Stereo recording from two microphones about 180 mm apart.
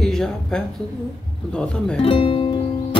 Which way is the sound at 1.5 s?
5° left (ahead or behind).